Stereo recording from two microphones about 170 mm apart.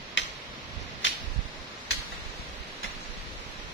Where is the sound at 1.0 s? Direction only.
90° left.